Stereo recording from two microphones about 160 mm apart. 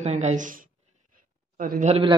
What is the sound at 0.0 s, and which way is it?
Speech, 45° right (ahead or behind).